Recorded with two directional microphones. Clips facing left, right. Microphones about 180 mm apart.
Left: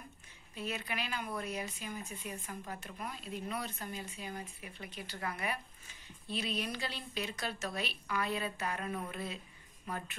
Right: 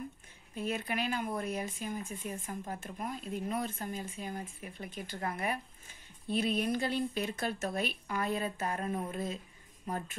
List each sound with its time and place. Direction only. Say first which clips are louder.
0.6 s a woman's voice: right 5 dB; 50° right (ahead or behind)